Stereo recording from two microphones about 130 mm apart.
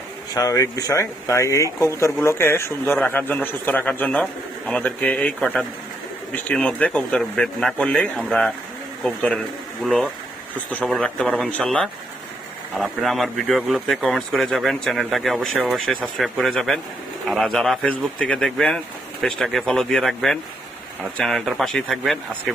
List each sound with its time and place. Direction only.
0.3 s a man's voice: 25° left (ahead or behind); by 22.5 s centre (ahead or behind)